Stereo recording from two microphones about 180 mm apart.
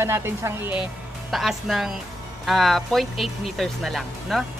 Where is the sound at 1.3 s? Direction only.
Centre (ahead or behind).